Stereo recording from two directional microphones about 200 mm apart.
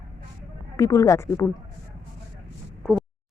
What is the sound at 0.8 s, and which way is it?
Speech, 15° left (ahead or behind).